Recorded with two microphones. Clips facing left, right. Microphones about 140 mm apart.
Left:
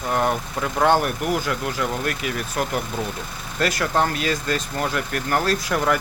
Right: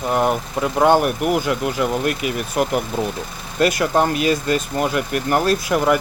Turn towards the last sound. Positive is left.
turn(degrees=-15)  # may be behind; listen again after turning